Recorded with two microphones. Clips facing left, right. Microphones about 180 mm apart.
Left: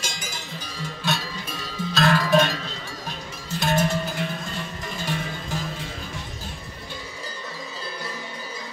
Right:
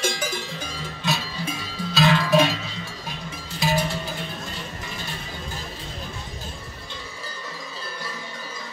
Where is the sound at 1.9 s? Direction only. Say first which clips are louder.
Right 1 dB; centre (ahead or behind).